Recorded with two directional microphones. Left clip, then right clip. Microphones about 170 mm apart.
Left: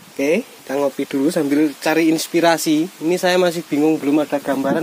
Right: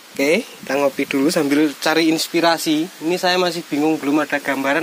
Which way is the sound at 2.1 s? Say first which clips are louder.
Left 1 dB; 45° left (ahead or behind).